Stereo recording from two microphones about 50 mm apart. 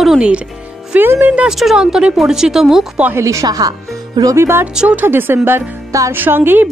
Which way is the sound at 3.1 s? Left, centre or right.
Right.